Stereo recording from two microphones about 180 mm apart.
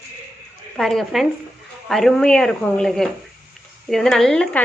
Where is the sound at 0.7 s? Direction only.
Centre (ahead or behind).